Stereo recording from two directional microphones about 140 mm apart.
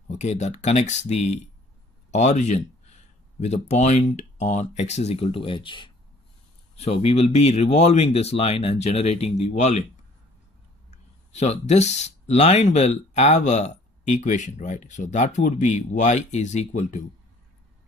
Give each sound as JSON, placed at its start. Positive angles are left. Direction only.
{"t": 0.1, "sound": "speech", "side_deg": 55}
{"t": 6.8, "sound": "speech", "side_deg": 45}
{"t": 10.9, "sound": "speech", "side_deg": 50}